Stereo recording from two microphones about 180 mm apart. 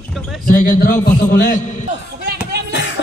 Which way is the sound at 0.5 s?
50° left (ahead or behind).